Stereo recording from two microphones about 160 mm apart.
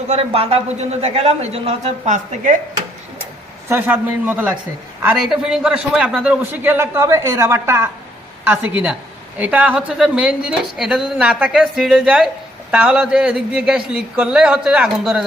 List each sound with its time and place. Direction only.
0.1 s speech: 40° right (ahead or behind)
3.7 s a man's voice: 15° right (ahead or behind)